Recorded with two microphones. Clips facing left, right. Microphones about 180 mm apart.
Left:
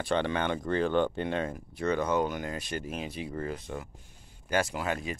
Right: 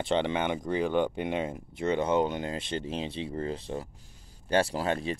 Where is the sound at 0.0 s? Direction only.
20° right (ahead or behind).